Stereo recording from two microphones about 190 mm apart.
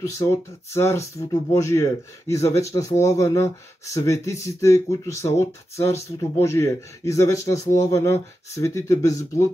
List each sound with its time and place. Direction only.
0.0 s speech: 15° left (ahead or behind)